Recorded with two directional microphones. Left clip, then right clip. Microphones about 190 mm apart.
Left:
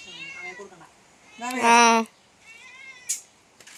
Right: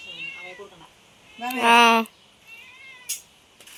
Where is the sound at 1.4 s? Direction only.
5° left (ahead or behind).